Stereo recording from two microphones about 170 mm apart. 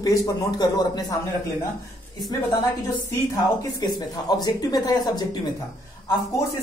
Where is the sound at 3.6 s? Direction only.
25° left (ahead or behind).